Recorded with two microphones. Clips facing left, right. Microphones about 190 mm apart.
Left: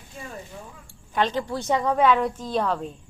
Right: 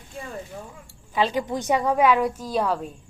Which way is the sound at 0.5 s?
45° right (ahead or behind).